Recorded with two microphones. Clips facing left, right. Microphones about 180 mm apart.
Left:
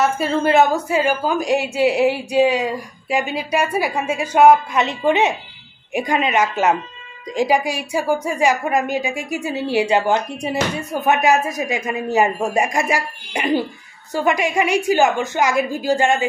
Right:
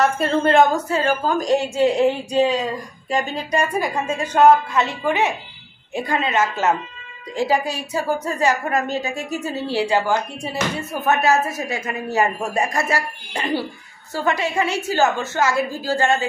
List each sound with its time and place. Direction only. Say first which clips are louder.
0.0 s a woman's voice: even; centre (ahead or behind)